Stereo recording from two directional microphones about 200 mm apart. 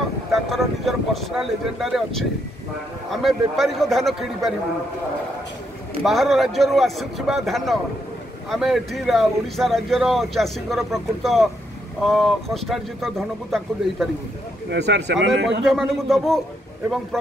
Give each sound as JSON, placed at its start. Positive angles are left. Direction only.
{"t": 0.3, "sound": "speech", "side_deg": 0}
{"t": 6.0, "sound": "speech", "side_deg": 0}
{"t": 14.7, "sound": "speech", "side_deg": -60}
{"t": 15.6, "sound": "speech", "side_deg": 0}